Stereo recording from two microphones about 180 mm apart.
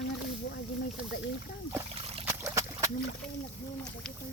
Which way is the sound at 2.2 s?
15° right (ahead or behind).